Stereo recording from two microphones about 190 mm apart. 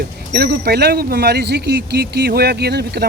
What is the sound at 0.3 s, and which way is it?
Speech, 55° right (ahead or behind).